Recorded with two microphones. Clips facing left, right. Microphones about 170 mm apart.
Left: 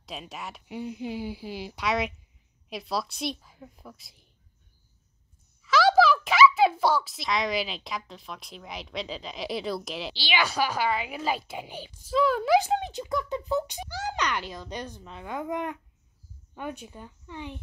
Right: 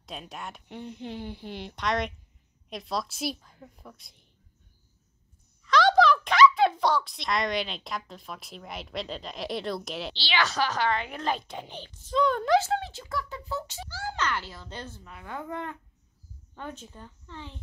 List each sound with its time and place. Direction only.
0.0 s speech: centre (ahead or behind)
5.6 s a child's voice: 5° left (ahead or behind)
10.1 s a child's voice: 10° left (ahead or behind)
12.5 s a child's voice: 15° left (ahead or behind)